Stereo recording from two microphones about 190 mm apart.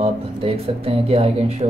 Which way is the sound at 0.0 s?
30° right (ahead or behind).